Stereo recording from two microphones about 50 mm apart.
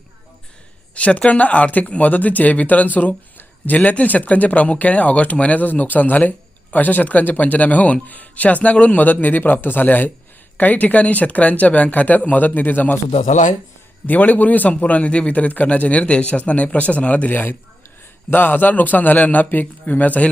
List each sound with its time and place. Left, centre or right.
0.9 s speech: left
14.1 s speech: left